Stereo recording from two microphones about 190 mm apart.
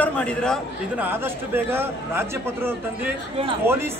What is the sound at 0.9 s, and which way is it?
A man's voice, 10° right (ahead or behind).